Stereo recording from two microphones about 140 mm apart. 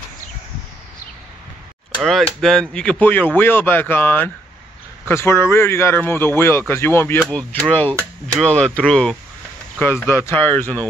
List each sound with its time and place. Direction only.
2.0 s speech: centre (ahead or behind)